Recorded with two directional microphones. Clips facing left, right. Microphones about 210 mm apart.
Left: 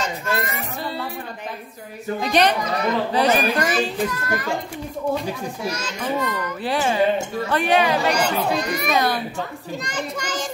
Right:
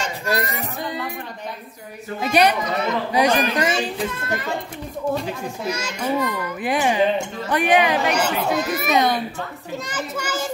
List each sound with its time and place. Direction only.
0.0 s music: 35° right (ahead or behind)
0.8 s music: 15° right (ahead or behind)
2.1 s a child's voice: 10° right (ahead or behind)
3.7 s a child's voice: 25° right (ahead or behind)
5.7 s a child's voice: 10° right (ahead or behind)
8.9 s a child's voice: 20° right (ahead or behind)
9.8 s a child's voice: 5° right (ahead or behind)